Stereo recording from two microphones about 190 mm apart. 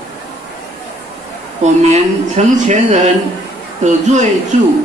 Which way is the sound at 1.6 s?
35° right (ahead or behind).